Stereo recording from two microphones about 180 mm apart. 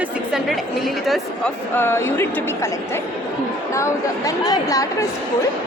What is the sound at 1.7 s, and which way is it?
A woman's voice, 15° left (ahead or behind).